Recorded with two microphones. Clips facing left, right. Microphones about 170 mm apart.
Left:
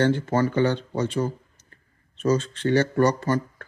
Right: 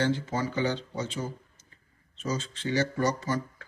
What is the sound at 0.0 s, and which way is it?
Speech, 60° left (ahead or behind).